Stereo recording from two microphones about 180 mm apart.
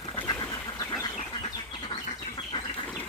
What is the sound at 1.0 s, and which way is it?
Bird, 30° left (ahead or behind).